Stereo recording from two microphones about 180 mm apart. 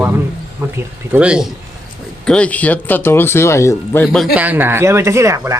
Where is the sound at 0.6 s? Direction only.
15° right (ahead or behind).